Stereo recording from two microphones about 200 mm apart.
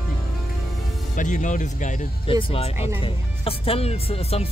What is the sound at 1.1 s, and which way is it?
Speech, 40° left (ahead or behind).